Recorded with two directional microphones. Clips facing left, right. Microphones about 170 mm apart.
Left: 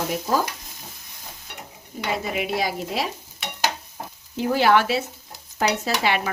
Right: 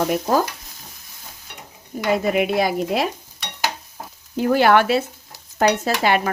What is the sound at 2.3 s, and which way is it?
Speech, 55° right (ahead or behind).